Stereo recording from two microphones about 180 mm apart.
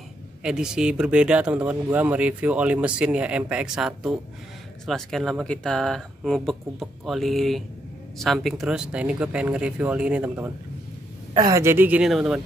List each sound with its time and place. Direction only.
0.4 s speech: 5° right (ahead or behind)
11.3 s a woman's voice: 20° right (ahead or behind); by 12.4 s 5° right (ahead or behind)